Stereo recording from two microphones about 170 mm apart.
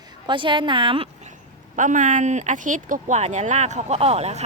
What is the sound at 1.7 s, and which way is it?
Speech, 50° right (ahead or behind).